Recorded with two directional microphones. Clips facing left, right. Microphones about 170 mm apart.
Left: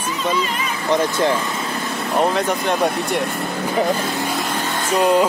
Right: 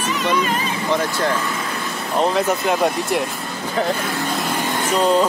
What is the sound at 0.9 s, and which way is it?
Speech, 20° left (ahead or behind).